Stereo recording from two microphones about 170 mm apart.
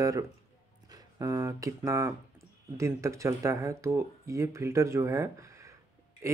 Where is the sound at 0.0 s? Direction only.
20° right (ahead or behind).